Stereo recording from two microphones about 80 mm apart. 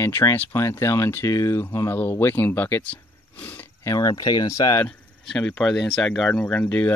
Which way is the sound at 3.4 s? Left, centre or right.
Left.